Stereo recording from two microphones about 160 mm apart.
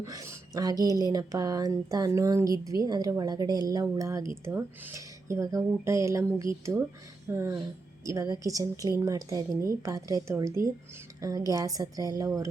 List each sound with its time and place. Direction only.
0.0 s a woman's voice: 20° right (ahead or behind)